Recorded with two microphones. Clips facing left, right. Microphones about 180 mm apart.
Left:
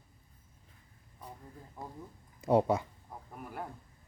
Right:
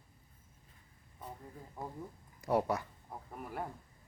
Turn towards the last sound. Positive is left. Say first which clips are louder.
# right 1 dB
turn(degrees=0)  # may be behind; listen again after turning